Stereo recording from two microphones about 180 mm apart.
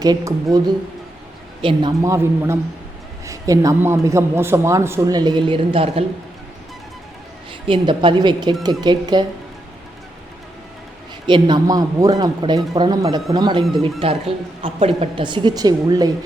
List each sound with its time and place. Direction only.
0.0 s a woman's voice: 20° right (ahead or behind)
1.6 s a man's voice: 20° right (ahead or behind)
7.7 s a woman's voice: 25° right (ahead or behind)
11.3 s a woman's voice: 25° right (ahead or behind)